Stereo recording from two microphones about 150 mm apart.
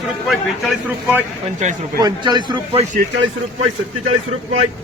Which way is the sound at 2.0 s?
30° right (ahead or behind).